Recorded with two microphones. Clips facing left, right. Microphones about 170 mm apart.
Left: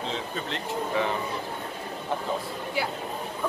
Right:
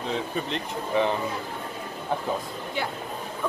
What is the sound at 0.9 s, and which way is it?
Speech, 20° right (ahead or behind).